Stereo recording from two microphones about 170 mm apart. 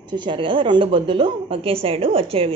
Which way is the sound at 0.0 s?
30° right (ahead or behind).